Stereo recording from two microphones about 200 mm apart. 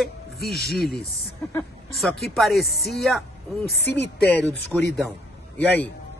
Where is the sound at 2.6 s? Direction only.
50° left (ahead or behind).